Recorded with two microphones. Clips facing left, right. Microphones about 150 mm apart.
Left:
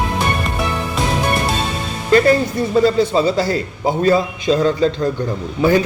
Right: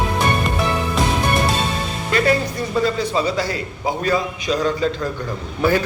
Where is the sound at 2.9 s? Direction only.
30° left (ahead or behind).